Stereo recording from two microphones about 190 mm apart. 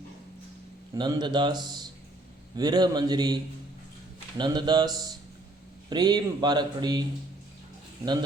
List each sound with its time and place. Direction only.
0.9 s a man's voice: 25° right (ahead or behind)